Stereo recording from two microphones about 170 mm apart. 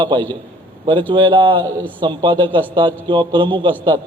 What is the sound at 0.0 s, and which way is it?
A man's voice, 30° right (ahead or behind).